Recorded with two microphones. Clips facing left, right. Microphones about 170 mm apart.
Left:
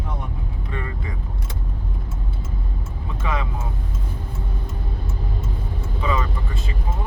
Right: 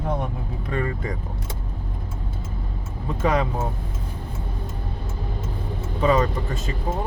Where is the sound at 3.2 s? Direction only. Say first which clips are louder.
Right 6 dB; 40° right (ahead or behind).